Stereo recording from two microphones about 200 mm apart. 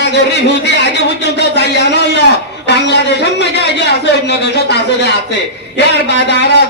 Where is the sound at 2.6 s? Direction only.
60° left (ahead or behind).